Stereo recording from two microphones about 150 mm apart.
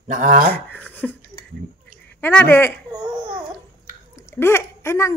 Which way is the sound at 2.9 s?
30° right (ahead or behind).